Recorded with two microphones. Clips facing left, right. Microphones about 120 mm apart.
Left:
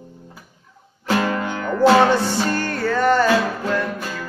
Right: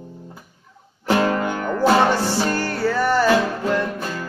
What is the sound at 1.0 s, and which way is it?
Music, 25° right (ahead or behind).